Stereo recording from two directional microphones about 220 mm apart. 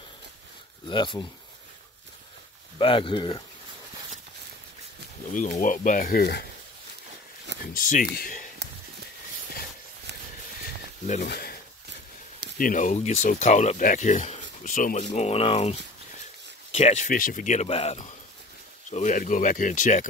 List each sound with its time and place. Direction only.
0.8 s speech: 20° left (ahead or behind)
2.8 s speech: 25° left (ahead or behind)
5.3 s speech: 35° left (ahead or behind)
7.6 s speech: 40° left (ahead or behind)
11.2 s speech: 45° left (ahead or behind)
12.5 s speech: 35° left (ahead or behind)
16.7 s speech: 30° left (ahead or behind)